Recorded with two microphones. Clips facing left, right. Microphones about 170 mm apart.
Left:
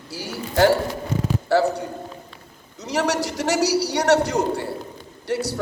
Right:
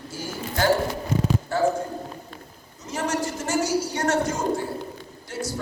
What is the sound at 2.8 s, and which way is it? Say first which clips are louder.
A man's voice: left 4 dB; 75° left (ahead or behind).